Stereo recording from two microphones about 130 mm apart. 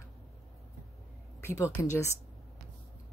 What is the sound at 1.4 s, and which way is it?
Speech, 20° left (ahead or behind).